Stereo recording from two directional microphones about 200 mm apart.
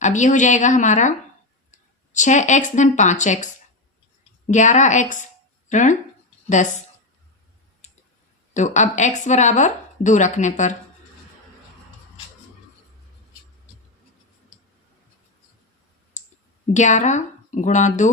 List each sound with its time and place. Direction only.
0.0 s speech: 40° left (ahead or behind)
8.5 s speech: 35° left (ahead or behind)
16.1 s clicking: 40° left (ahead or behind)
16.7 s speech: 35° left (ahead or behind)